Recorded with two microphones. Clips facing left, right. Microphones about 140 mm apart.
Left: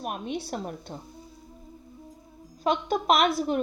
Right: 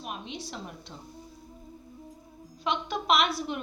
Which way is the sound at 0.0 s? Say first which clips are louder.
Left 6 dB; 50° left (ahead or behind).